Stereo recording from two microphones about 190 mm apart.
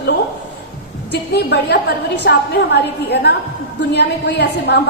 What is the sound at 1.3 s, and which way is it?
A woman's voice, 60° left (ahead or behind).